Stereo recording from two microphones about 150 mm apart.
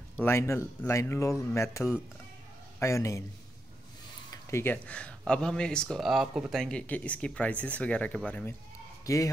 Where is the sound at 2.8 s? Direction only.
20° left (ahead or behind).